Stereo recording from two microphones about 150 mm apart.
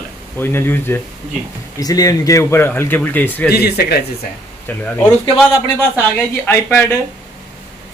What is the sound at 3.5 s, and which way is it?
Speech, 90° left.